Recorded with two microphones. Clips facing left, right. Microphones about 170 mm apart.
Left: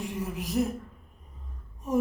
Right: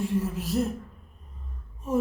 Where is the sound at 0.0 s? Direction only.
15° left (ahead or behind).